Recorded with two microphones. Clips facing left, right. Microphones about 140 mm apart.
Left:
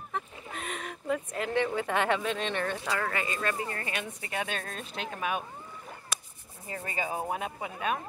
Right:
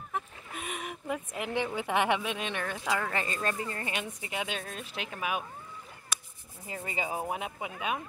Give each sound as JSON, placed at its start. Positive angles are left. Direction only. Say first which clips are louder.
{"t": 0.1, "sound": "speech", "louder": "left 1 dB", "side_deg": -10}
{"t": 3.1, "sound": "speech", "louder": "left 1 dB", "side_deg": -30}
{"t": 6.7, "sound": "rub", "louder": "left 1 dB", "side_deg": -20}
{"t": 7.2, "sound": "speech", "louder": "left 1 dB", "side_deg": -15}